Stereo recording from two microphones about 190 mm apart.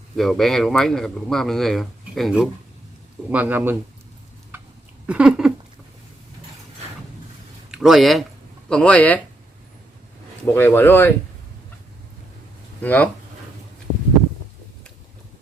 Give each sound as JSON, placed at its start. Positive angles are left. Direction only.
{"t": 0.2, "sound": "a man's voice", "side_deg": 0}
{"t": 5.0, "sound": "a sound", "side_deg": -5}
{"t": 7.7, "sound": "speech", "side_deg": 0}
{"t": 10.5, "sound": "speech", "side_deg": 10}
{"t": 12.8, "sound": "speech", "side_deg": 10}